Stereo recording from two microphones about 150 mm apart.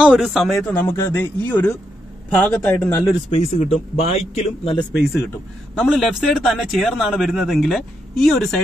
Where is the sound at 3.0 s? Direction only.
40° left (ahead or behind).